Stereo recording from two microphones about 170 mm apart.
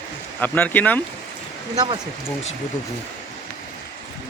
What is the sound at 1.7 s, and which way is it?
Speech, 25° right (ahead or behind).